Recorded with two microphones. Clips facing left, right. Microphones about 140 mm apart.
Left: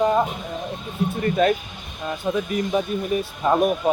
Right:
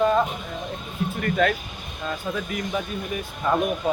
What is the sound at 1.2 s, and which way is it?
Speech, 20° left (ahead or behind).